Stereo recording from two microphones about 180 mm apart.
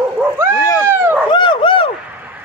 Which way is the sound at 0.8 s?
15° right (ahead or behind).